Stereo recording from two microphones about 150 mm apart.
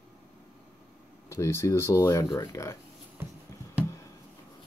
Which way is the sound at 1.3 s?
20° left (ahead or behind).